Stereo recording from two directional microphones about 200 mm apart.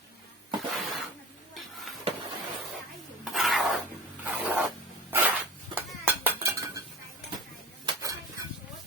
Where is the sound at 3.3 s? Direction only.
Centre (ahead or behind).